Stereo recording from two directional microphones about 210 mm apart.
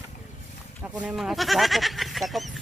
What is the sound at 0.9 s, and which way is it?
Speech, 5° right (ahead or behind).